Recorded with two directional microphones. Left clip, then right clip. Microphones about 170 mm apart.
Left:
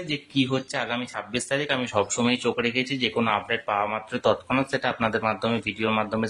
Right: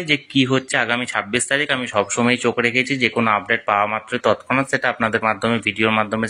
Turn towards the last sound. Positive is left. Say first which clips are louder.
# right 6 dB
turn(degrees=-15)  # may be behind; listen again after turning